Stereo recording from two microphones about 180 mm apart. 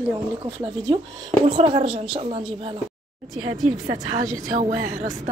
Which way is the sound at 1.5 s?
30° right (ahead or behind).